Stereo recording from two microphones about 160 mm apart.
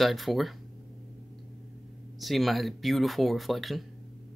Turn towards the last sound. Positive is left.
turn(degrees=0)  # may be behind; listen again after turning